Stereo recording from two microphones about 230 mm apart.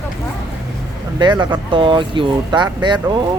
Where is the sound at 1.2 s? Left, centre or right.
Centre.